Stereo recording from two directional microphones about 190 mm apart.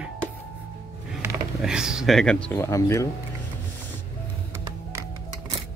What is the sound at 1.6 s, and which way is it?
Speech, 5° right (ahead or behind).